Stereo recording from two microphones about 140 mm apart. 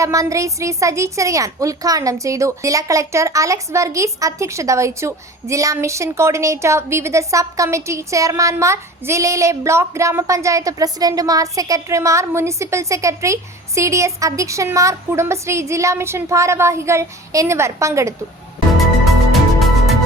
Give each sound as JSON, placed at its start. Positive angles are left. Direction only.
{"t": 0.0, "sound": "a woman's voice", "side_deg": -25}
{"t": 19.0, "sound": "music", "side_deg": 0}